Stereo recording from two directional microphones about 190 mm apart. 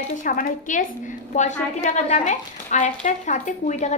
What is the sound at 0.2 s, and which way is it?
A woman's voice, 45° left (ahead or behind).